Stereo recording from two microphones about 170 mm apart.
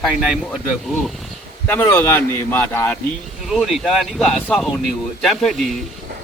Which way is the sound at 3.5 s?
Centre (ahead or behind).